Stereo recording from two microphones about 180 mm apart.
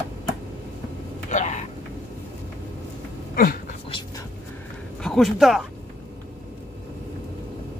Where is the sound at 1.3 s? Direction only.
40° left (ahead or behind).